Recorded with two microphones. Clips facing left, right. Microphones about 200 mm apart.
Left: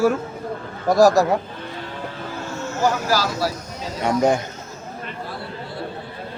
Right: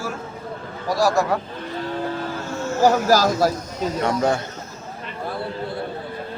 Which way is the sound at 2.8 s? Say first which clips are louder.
Right 5 dB; 45° right (ahead or behind).